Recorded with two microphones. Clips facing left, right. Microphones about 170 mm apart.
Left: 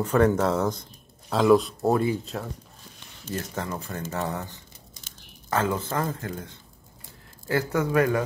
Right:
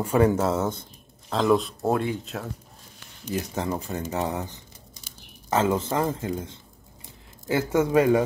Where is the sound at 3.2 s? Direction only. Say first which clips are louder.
Right 3 dB; 15° right (ahead or behind).